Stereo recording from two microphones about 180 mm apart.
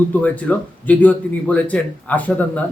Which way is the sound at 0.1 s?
10° left (ahead or behind).